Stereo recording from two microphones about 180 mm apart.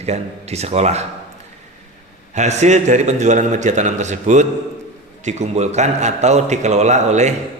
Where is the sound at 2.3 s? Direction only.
40° right (ahead or behind).